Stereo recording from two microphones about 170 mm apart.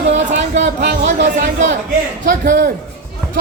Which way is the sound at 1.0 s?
45° right (ahead or behind).